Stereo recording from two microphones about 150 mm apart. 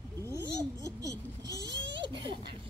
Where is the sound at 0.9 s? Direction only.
25° right (ahead or behind).